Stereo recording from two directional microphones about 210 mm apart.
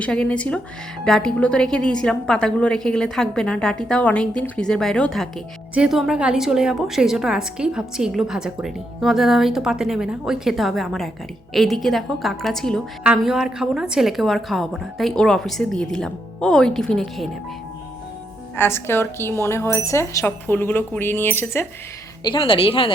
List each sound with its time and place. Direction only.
0.0 s a woman's voice: 5° left (ahead or behind)
18.5 s speech: 10° left (ahead or behind)
22.2 s a woman's voice: 20° left (ahead or behind)